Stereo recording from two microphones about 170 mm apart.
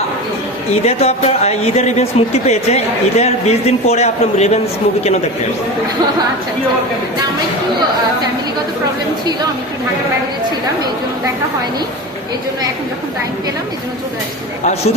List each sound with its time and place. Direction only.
0.9 s speech: 40° left (ahead or behind)